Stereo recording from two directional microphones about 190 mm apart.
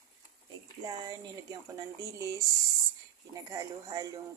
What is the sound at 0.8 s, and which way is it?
Speech, 20° right (ahead or behind).